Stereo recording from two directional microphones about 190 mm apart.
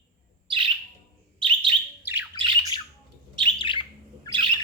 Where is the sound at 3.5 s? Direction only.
25° left (ahead or behind).